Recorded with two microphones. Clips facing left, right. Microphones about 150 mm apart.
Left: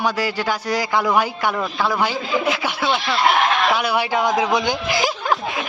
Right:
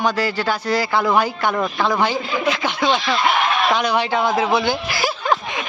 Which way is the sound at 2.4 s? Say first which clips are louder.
Right 2 dB; 10° left (ahead or behind).